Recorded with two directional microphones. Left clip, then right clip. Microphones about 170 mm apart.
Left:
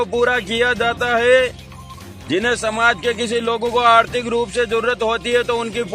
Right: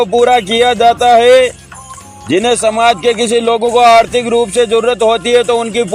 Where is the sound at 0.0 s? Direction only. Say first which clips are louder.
Right 8 dB; 40° right (ahead or behind).